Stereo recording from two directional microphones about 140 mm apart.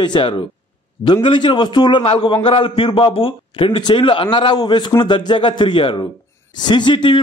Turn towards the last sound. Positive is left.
turn(degrees=35)  # may be behind; listen again after turning